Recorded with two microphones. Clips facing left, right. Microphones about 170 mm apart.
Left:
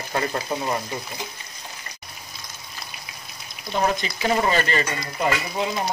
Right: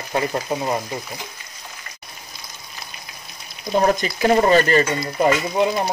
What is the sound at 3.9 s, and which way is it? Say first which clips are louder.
Speech: right 6 dB; 45° right (ahead or behind).